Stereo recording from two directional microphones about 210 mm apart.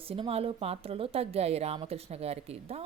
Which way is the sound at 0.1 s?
25° right (ahead or behind).